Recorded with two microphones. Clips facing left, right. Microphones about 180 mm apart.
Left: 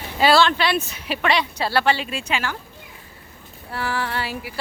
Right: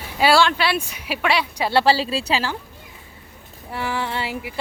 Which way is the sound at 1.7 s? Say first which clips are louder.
Right 5 dB; 30° right (ahead or behind).